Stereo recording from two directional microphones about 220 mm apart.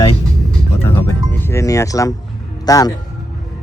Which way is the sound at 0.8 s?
10° left (ahead or behind).